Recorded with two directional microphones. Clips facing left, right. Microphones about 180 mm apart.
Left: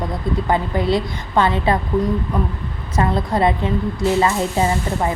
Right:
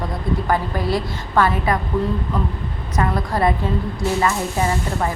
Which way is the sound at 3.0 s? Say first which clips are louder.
Left 2 dB; 25° left (ahead or behind).